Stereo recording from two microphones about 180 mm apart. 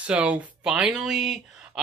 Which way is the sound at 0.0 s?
5° right (ahead or behind).